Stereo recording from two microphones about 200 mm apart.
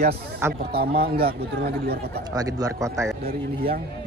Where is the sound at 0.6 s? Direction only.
50° right (ahead or behind).